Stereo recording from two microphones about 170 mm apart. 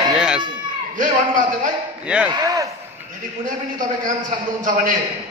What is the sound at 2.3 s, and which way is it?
Speech, 20° right (ahead or behind).